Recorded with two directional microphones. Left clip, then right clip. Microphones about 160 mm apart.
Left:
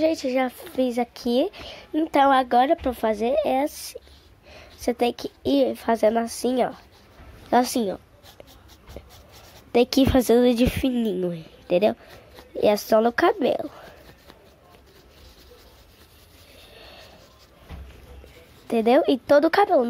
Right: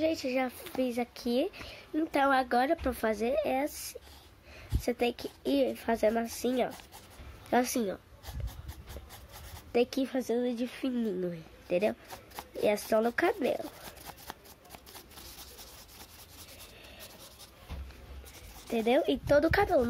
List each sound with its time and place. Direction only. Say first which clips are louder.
0.0 s a woman's voice: left 8 dB; 20° left (ahead or behind)
9.7 s a sound: left 9 dB; 25° left (ahead or behind)
9.9 s speech: left 13 dB; 50° left (ahead or behind)
10.8 s speech: left 9 dB; 25° left (ahead or behind)
16.7 s a sound: left 6 dB; 25° left (ahead or behind)
18.7 s speech: left 9 dB; 25° left (ahead or behind)